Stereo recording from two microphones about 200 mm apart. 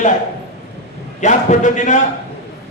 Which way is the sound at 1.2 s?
40° left (ahead or behind).